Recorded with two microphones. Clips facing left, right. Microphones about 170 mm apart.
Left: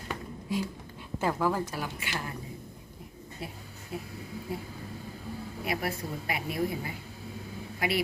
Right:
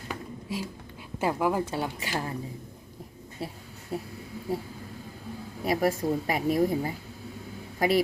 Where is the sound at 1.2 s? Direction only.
15° right (ahead or behind).